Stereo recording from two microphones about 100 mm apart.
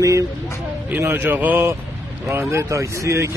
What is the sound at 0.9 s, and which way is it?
Speech, 20° right (ahead or behind).